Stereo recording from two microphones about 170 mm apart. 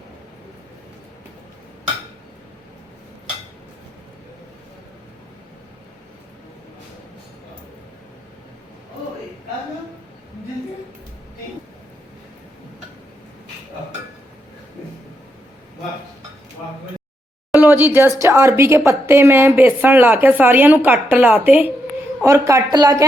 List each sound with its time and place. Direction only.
17.6 s a woman's voice: 10° right (ahead or behind)